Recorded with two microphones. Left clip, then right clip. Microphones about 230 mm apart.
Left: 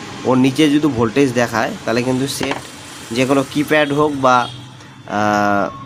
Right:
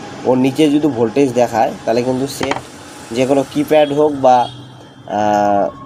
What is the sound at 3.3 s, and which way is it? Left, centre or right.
Speech, left.